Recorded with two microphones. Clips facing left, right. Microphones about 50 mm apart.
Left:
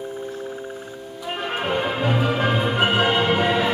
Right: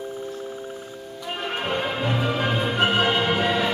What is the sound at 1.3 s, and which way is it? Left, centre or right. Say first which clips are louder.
Music: left 2 dB; centre.